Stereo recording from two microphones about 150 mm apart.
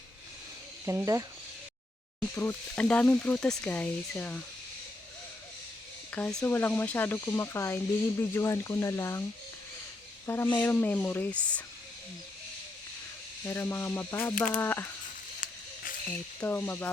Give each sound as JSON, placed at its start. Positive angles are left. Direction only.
{"t": 0.9, "sound": "speech", "side_deg": -20}
{"t": 2.3, "sound": "speech", "side_deg": 15}
{"t": 6.1, "sound": "speech", "side_deg": 10}
{"t": 10.2, "sound": "speech", "side_deg": 15}
{"t": 13.4, "sound": "speech", "side_deg": 15}
{"t": 15.4, "sound": "a sound", "side_deg": 60}
{"t": 16.4, "sound": "speech", "side_deg": 15}